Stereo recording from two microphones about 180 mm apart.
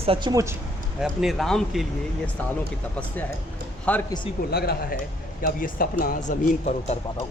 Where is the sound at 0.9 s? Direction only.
Centre (ahead or behind).